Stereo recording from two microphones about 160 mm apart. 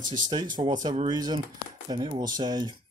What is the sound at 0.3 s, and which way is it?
Speech, 25° right (ahead or behind).